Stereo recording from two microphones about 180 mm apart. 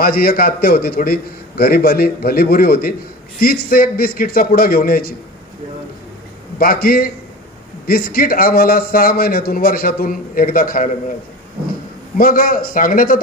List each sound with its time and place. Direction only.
0.0 s a man's voice: 55° left (ahead or behind)
6.6 s a man's voice: 55° left (ahead or behind)
12.2 s a man's voice: 50° left (ahead or behind)